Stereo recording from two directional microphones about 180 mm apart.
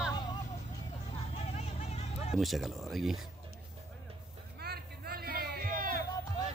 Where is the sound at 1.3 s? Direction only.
35° left (ahead or behind).